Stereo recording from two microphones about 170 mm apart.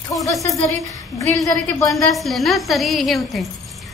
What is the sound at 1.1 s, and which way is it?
Speech, 20° left (ahead or behind).